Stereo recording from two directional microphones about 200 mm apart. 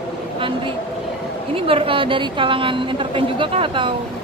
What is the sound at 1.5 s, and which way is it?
A woman's voice, 25° right (ahead or behind).